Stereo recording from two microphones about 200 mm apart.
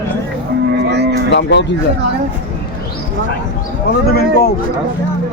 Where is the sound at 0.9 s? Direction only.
55° right (ahead or behind).